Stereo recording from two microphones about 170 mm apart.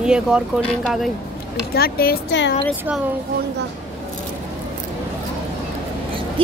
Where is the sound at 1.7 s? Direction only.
65° left (ahead or behind); by 2.6 s 90° left.